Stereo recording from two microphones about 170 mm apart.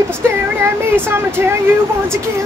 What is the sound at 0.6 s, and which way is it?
Speech, 15° right (ahead or behind).